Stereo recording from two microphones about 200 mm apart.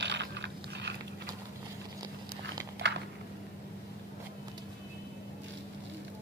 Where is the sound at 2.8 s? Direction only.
60° right (ahead or behind).